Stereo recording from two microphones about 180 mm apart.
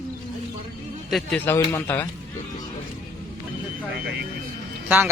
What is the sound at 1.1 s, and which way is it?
Speech, 5° left (ahead or behind).